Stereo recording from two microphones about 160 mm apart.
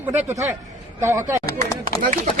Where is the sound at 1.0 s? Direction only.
15° right (ahead or behind).